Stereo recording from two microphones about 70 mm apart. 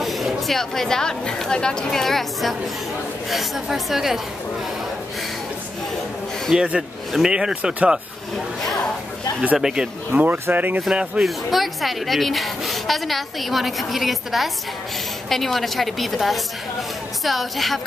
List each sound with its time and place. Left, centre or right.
0.0 s a woman's voice: centre
6.5 s speech: centre
9.6 s speech: centre
10.1 s speech: right
11.2 s a woman's voice: centre